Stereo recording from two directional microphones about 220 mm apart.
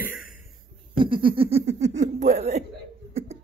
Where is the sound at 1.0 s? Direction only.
20° right (ahead or behind).